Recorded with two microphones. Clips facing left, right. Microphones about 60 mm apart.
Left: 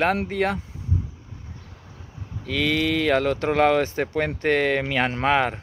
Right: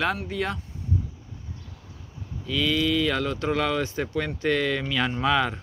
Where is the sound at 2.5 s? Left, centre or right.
Left.